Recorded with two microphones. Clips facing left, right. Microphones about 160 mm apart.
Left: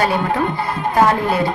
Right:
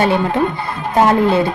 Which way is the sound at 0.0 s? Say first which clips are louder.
Right 3 dB; 25° right (ahead or behind).